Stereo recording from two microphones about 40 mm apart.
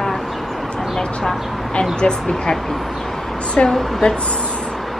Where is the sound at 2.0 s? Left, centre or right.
Centre.